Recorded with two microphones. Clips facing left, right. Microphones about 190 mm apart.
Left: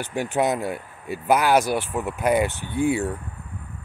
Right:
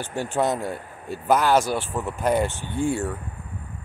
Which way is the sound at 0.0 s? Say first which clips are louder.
Left 1 dB; 15° left (ahead or behind).